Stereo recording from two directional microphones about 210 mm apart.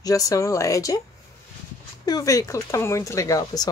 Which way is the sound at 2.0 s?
15° left (ahead or behind).